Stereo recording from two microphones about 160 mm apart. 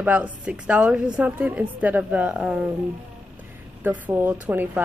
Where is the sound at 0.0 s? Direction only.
10° right (ahead or behind).